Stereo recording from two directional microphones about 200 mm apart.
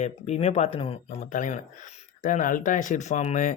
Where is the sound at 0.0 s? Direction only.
35° left (ahead or behind).